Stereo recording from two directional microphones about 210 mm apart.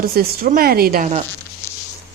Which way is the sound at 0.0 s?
45° right (ahead or behind).